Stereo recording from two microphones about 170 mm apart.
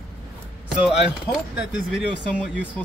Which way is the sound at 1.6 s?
5° right (ahead or behind).